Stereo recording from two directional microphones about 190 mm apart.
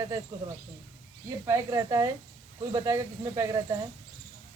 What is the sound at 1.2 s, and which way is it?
Speech, 15° right (ahead or behind).